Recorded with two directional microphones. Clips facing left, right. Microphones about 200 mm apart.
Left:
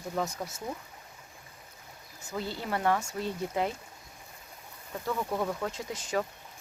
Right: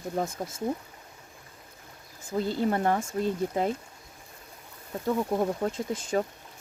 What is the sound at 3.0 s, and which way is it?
Speech, 55° right (ahead or behind).